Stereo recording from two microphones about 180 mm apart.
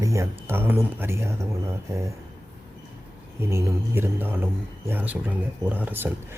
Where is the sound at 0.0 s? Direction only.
15° right (ahead or behind).